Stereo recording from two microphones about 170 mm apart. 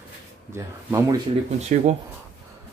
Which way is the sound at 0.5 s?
15° right (ahead or behind).